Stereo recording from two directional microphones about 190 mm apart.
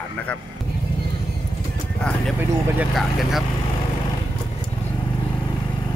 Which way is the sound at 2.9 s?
Centre (ahead or behind).